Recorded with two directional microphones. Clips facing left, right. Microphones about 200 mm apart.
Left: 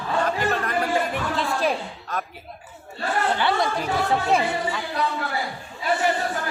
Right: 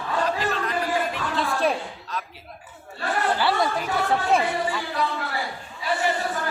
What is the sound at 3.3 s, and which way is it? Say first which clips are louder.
Speech: right 1 dB; 5° right (ahead or behind).